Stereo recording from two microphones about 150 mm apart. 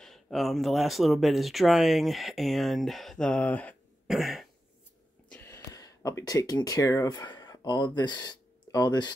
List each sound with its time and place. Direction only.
0.0 s speech: centre (ahead or behind)
4.1 s cough: centre (ahead or behind)
5.3 s speech: 15° left (ahead or behind)